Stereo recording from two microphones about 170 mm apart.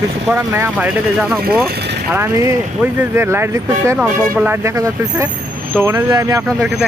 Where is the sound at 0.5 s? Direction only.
15° right (ahead or behind).